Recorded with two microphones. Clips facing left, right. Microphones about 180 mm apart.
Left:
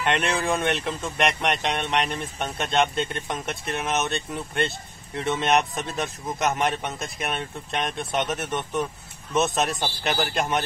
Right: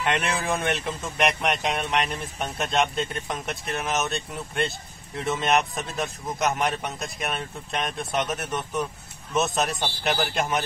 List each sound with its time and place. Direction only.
0.0 s speech: centre (ahead or behind)